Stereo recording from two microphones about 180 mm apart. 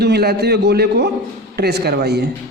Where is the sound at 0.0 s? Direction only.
65° right (ahead or behind).